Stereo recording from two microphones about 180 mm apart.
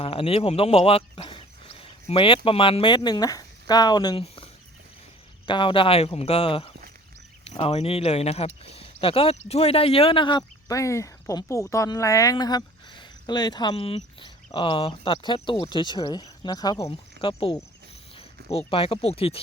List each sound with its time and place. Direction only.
0.0 s speech: 30° left (ahead or behind)
5.5 s speech: 25° left (ahead or behind)